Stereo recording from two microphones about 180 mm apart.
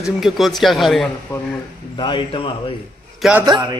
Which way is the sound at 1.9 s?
25° left (ahead or behind).